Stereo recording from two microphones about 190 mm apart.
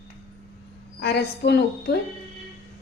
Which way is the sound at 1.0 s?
60° left (ahead or behind).